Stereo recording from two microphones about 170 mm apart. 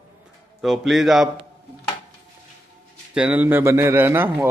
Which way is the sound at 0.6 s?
Centre (ahead or behind).